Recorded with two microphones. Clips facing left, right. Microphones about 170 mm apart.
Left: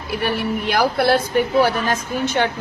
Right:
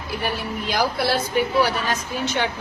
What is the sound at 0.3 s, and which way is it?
A woman's voice, 60° left (ahead or behind).